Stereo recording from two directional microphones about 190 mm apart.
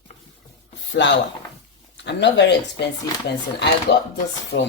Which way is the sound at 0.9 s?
70° left (ahead or behind).